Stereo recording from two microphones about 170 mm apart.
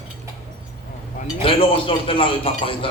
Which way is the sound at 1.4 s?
30° left (ahead or behind).